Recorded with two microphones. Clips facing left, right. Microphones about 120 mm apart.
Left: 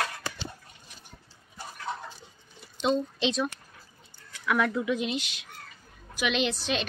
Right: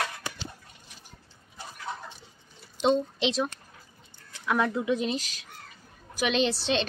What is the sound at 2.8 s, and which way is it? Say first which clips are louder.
Speech: right 2 dB; 30° right (ahead or behind).